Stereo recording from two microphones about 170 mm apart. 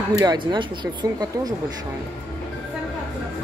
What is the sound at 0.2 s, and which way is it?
Speech, 25° right (ahead or behind).